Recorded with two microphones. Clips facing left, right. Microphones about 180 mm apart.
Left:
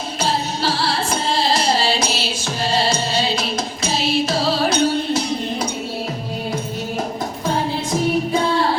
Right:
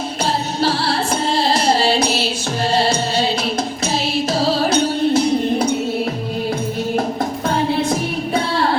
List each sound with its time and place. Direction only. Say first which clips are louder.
0.6 s music: right 6 dB; 60° right (ahead or behind)